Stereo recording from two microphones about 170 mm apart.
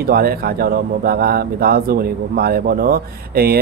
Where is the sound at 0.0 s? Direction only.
60° right (ahead or behind).